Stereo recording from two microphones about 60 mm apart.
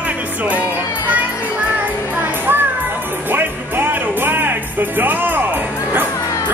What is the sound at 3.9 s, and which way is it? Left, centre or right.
Music, right.